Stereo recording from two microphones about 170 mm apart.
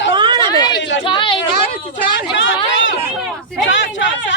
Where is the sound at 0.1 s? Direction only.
25° right (ahead or behind).